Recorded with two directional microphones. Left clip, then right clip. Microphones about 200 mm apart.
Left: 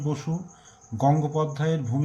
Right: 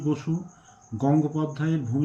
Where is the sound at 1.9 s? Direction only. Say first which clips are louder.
Right 4 dB; 30° left (ahead or behind).